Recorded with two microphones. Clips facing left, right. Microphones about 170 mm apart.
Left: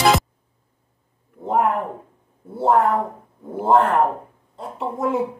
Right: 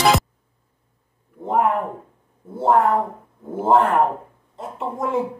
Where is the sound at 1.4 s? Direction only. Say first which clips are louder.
Even; centre (ahead or behind).